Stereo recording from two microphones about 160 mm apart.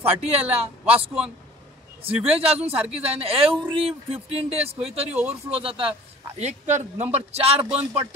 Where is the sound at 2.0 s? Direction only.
35° right (ahead or behind).